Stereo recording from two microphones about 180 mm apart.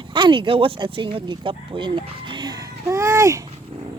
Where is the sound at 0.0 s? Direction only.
25° right (ahead or behind).